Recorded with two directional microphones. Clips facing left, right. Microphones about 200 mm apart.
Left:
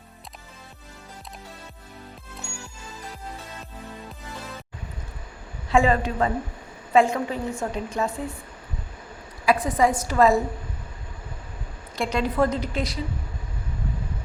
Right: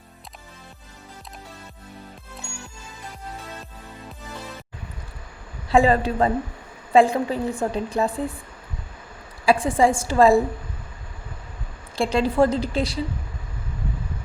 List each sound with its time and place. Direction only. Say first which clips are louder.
5.6 s a woman's voice: right 3 dB; 35° right (ahead or behind)
9.5 s a woman's voice: right 2 dB; 30° right (ahead or behind)
11.9 s a woman's voice: right 4 dB; 30° right (ahead or behind)